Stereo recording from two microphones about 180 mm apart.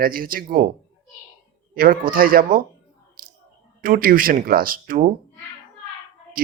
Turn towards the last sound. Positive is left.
turn(degrees=-50)  # may be behind; listen again after turning